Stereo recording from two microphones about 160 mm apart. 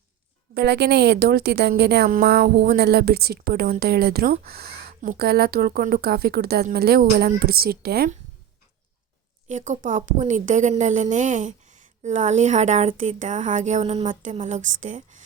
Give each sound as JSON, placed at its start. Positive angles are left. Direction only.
{"t": 0.5, "sound": "a woman's voice", "side_deg": -90}
{"t": 2.0, "sound": "speech", "side_deg": -65}
{"t": 9.5, "sound": "speech", "side_deg": -50}